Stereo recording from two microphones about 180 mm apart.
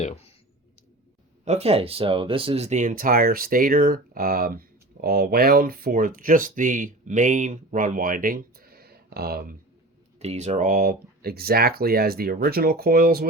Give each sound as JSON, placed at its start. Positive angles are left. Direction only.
{"t": 1.5, "sound": "speech", "side_deg": -35}
{"t": 10.2, "sound": "speech", "side_deg": -40}